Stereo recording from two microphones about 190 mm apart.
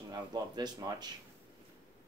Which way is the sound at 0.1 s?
20° right (ahead or behind).